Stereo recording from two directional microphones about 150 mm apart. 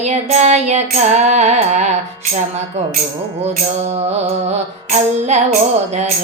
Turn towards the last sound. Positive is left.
turn(degrees=-50)  # may be behind; listen again after turning